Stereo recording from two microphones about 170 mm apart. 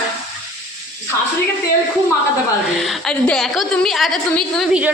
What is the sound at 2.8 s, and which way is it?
A woman's voice, centre (ahead or behind).